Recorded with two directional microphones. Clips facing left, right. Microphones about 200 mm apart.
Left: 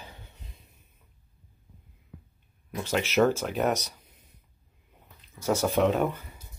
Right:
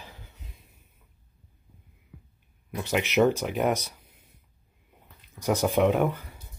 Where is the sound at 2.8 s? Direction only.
15° right (ahead or behind).